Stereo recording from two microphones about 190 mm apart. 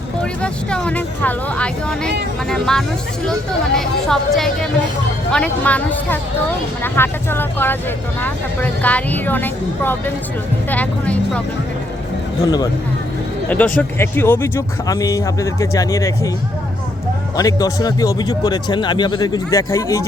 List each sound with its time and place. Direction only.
0.2 s speech: 5° left (ahead or behind)
12.4 s speech: 20° left (ahead or behind)
13.5 s speech: 10° left (ahead or behind)
17.3 s speech: 20° left (ahead or behind)